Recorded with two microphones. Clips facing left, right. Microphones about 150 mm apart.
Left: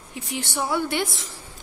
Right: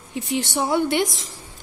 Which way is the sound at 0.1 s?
20° right (ahead or behind).